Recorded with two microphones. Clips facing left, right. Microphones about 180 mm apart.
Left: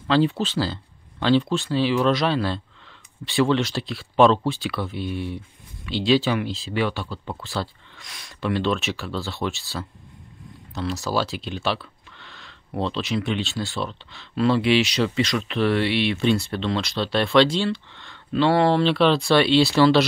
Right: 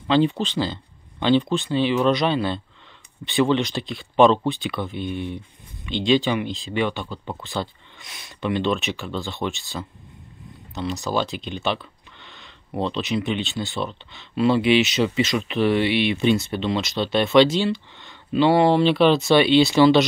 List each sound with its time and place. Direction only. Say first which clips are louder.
0.1 s speech: right 1 dB; centre (ahead or behind)